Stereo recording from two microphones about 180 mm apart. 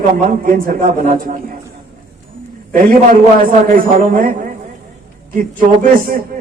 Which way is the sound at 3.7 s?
50° right (ahead or behind).